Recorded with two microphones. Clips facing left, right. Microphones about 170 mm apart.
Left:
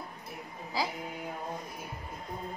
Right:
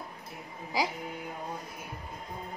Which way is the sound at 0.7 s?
15° right (ahead or behind).